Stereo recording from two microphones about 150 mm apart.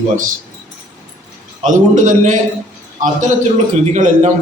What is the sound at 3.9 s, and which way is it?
Speech, 55° right (ahead or behind).